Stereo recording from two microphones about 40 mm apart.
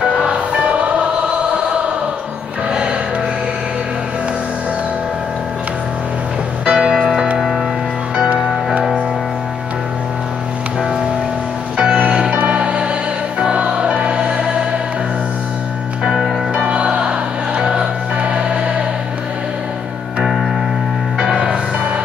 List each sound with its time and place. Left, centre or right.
0.3 s music: right
6.6 s music: right
7.3 s music: centre
11.7 s music: right
12.3 s music: right
16.5 s music: right
21.2 s music: right